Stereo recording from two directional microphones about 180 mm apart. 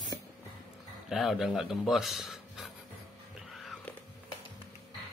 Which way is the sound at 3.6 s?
Centre (ahead or behind).